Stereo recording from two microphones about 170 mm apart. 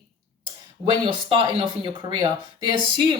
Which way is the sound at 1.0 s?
30° right (ahead or behind).